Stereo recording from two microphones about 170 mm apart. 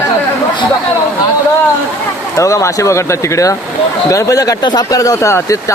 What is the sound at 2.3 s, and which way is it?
Speech, 20° left (ahead or behind).